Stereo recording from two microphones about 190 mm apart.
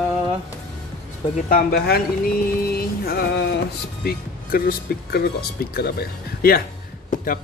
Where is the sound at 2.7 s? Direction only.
55° left (ahead or behind).